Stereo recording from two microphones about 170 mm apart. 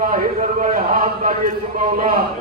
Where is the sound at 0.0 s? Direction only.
55° right (ahead or behind).